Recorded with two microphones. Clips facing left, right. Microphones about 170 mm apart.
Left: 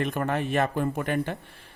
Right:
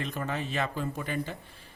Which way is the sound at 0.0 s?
55° left (ahead or behind).